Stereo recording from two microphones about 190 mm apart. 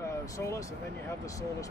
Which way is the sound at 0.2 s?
15° left (ahead or behind).